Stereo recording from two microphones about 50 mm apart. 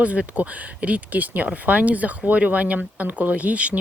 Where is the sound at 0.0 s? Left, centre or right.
Right.